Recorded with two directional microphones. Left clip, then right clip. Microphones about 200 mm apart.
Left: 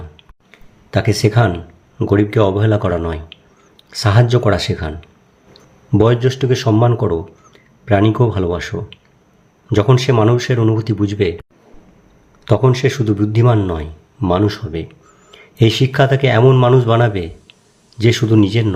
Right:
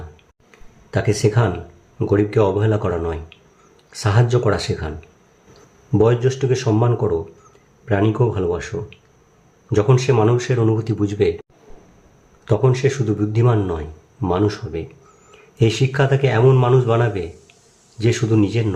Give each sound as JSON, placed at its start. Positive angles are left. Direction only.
{"t": 0.9, "sound": "a man's voice", "side_deg": 20}
{"t": 12.5, "sound": "a man's voice", "side_deg": 20}